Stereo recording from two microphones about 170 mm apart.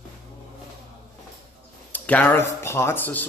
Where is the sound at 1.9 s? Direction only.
10° left (ahead or behind).